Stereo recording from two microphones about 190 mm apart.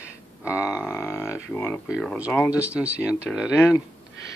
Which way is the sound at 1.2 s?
5° right (ahead or behind).